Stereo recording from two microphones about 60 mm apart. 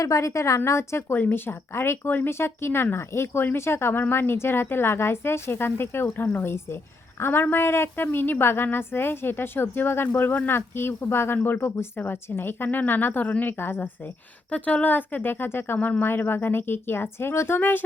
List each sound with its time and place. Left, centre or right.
0.0 s a woman's voice: left
1.1 s a woman's voice: left
14.5 s speech: left